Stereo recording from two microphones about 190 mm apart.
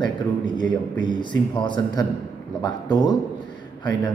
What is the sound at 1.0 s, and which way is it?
A man's voice, 25° left (ahead or behind).